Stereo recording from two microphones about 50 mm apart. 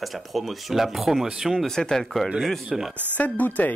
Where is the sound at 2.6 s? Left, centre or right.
Centre.